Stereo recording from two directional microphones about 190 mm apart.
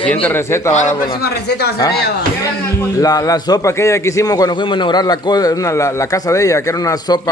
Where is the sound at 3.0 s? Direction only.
20° left (ahead or behind).